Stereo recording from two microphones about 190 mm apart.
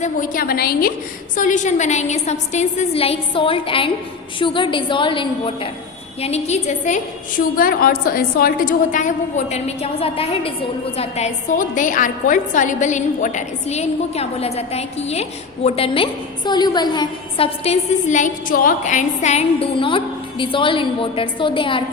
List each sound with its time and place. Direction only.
0.0 s a woman's voice: 45° left (ahead or behind)
1.4 s a woman's voice: 40° left (ahead or behind)